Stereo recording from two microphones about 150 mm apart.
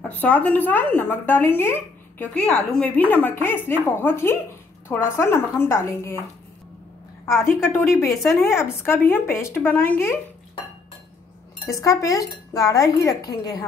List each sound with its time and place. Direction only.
0.0 s a woman's voice: 10° left (ahead or behind)
7.3 s a woman's voice: 15° left (ahead or behind)
11.7 s speech: 20° left (ahead or behind)